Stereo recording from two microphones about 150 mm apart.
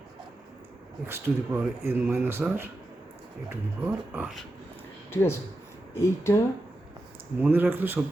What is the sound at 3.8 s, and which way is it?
Speech, 10° right (ahead or behind).